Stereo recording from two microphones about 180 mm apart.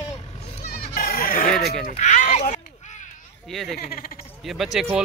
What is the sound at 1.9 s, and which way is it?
Speech, 40° left (ahead or behind).